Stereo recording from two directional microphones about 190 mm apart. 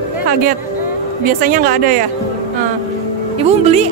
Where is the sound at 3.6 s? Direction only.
35° right (ahead or behind).